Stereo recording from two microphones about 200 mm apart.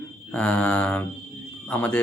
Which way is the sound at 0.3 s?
5° left (ahead or behind).